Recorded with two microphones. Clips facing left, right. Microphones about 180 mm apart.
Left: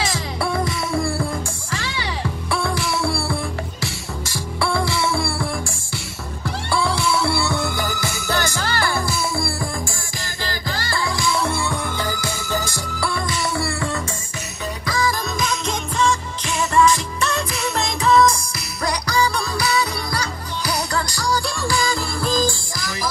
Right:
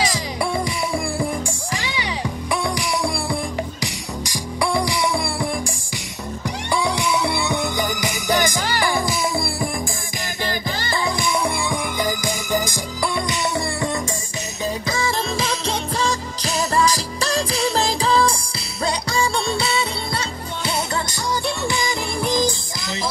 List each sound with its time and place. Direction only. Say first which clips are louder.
0.0 s music: right 1 dB; 15° right (ahead or behind)
14.9 s music: left 4 dB; 25° right (ahead or behind)